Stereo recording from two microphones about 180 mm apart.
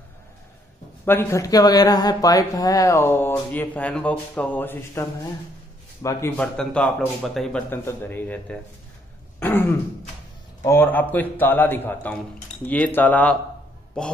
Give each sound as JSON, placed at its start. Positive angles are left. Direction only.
{"t": 1.0, "sound": "speech", "side_deg": 15}
{"t": 6.0, "sound": "speech", "side_deg": 15}
{"t": 6.4, "sound": "speech", "side_deg": 5}